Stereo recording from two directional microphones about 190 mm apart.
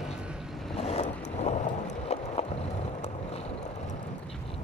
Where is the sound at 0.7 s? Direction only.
35° left (ahead or behind).